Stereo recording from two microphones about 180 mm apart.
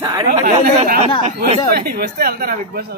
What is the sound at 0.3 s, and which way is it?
Speech, 45° right (ahead or behind).